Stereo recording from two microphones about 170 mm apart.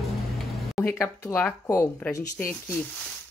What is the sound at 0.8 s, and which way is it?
Speech, 15° left (ahead or behind).